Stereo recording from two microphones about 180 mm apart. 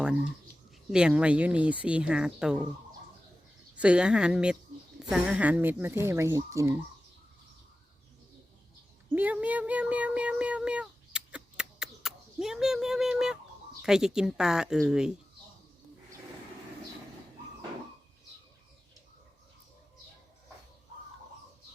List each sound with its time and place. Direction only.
0.9 s speech: 5° right (ahead or behind)
3.8 s speech: 5° right (ahead or behind)
9.1 s speech: 10° right (ahead or behind)